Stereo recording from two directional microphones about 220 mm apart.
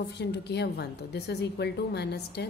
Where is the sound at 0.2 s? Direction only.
50° left (ahead or behind).